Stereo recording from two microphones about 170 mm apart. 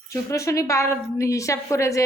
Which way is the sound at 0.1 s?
15° left (ahead or behind).